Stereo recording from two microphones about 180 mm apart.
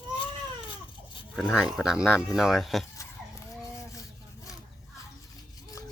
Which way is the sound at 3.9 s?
20° left (ahead or behind).